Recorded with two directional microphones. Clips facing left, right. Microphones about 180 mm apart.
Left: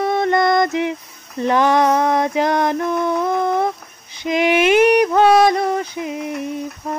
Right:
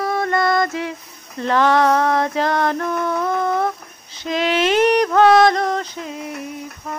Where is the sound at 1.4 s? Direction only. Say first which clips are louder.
Left 1 dB; 15° left (ahead or behind).